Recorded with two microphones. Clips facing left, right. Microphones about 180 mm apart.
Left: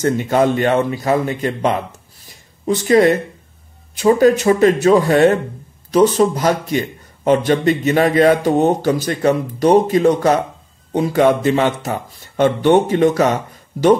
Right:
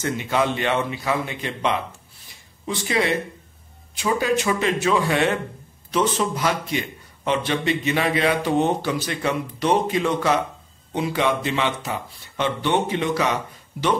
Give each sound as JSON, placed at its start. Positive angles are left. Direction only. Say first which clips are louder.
{"t": 0.0, "sound": "a man's voice", "louder": "left 8 dB", "side_deg": 45}